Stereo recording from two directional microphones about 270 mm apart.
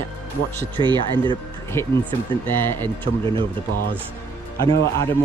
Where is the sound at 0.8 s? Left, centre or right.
Centre.